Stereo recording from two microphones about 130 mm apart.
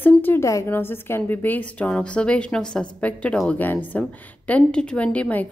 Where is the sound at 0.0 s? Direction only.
15° left (ahead or behind).